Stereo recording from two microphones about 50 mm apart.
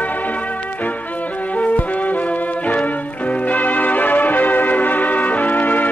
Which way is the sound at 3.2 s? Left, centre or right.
Left.